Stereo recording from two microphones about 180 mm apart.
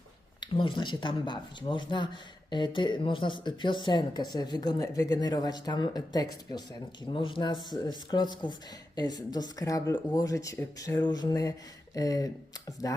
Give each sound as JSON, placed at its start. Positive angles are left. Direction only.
{"t": 0.3, "sound": "speech", "side_deg": 25}